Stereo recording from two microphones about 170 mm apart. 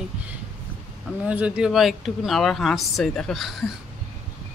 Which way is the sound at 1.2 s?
5° right (ahead or behind).